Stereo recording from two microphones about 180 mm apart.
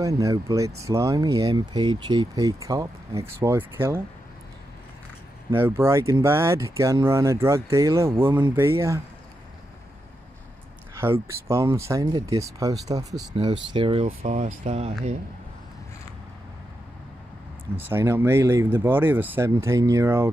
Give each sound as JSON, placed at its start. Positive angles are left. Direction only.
{"t": 0.0, "sound": "speech", "side_deg": -20}
{"t": 5.6, "sound": "speech", "side_deg": -15}
{"t": 11.0, "sound": "speech", "side_deg": -15}
{"t": 14.0, "sound": "speech", "side_deg": -40}
{"t": 17.7, "sound": "speech", "side_deg": -15}